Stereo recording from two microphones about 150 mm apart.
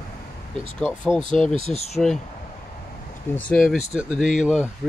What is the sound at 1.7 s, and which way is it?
Speech, 45° left (ahead or behind).